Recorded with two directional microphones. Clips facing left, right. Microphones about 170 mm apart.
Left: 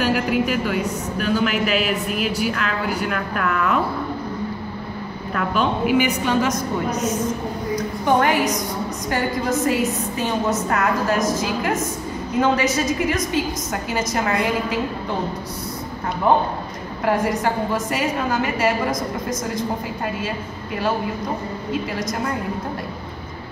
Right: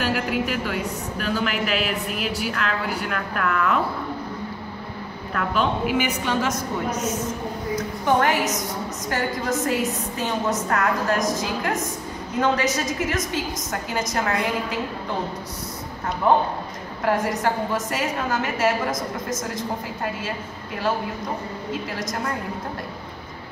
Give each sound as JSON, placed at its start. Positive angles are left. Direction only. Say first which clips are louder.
{"t": 0.0, "sound": "a woman's voice", "louder": "left 4 dB", "side_deg": 0}
{"t": 5.3, "sound": "a woman's voice", "louder": "left 2 dB", "side_deg": 5}
{"t": 7.7, "sound": "a woman's voice", "louder": "left 2 dB", "side_deg": -5}
{"t": 17.0, "sound": "a woman's voice", "louder": "left 2 dB", "side_deg": 0}